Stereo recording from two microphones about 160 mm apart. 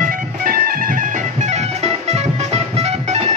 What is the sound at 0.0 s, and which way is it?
Music, 65° right (ahead or behind).